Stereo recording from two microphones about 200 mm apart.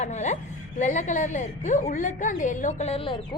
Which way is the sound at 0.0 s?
35° left (ahead or behind).